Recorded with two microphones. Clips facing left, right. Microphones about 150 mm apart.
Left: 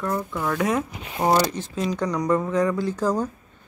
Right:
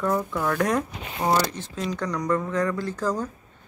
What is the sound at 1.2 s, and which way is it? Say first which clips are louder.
Speech: left 3 dB; 15° left (ahead or behind).